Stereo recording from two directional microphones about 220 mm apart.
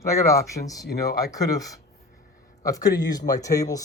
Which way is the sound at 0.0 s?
15° left (ahead or behind).